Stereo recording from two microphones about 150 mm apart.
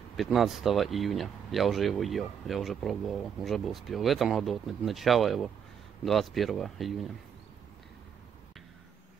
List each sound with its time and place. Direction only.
0.2 s speech: centre (ahead or behind)